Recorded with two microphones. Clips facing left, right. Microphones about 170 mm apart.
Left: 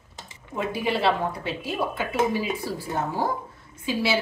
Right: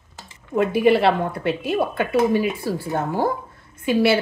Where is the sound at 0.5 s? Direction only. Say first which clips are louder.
Right 10 dB; 60° right (ahead or behind).